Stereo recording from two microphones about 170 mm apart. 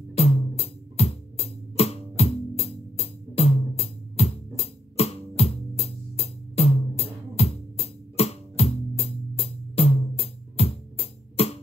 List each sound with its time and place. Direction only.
0.1 s music: 35° left (ahead or behind)